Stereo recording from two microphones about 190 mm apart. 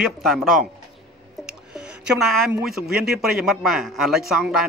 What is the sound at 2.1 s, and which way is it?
Speech, centre (ahead or behind).